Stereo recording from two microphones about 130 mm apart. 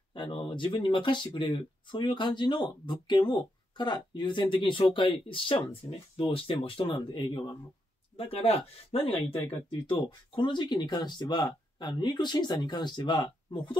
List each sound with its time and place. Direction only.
0.1 s speech: 40° left (ahead or behind)
8.2 s speech: 50° left (ahead or behind)